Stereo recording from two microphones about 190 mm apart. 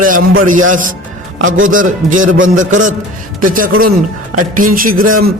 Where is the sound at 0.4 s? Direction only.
45° right (ahead or behind).